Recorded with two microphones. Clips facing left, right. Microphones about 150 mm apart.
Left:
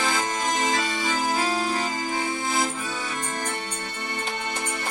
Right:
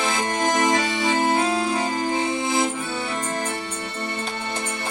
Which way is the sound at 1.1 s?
70° right (ahead or behind).